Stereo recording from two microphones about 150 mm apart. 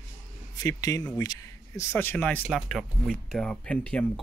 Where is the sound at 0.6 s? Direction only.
25° left (ahead or behind).